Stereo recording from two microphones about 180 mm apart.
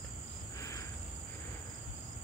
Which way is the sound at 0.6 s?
20° left (ahead or behind).